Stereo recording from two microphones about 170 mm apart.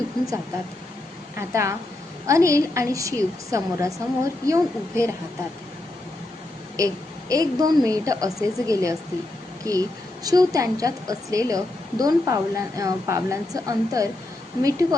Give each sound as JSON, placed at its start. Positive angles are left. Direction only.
{"t": 1.4, "sound": "a woman's voice", "side_deg": -15}
{"t": 6.7, "sound": "a woman's voice", "side_deg": -20}